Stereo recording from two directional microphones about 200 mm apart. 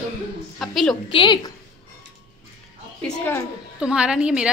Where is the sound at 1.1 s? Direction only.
25° left (ahead or behind).